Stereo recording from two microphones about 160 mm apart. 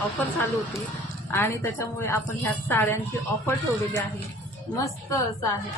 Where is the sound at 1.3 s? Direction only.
15° left (ahead or behind).